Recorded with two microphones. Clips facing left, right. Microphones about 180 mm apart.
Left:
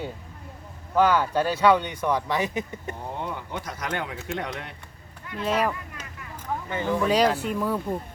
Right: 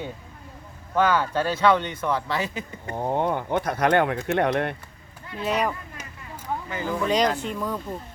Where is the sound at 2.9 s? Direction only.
60° right (ahead or behind).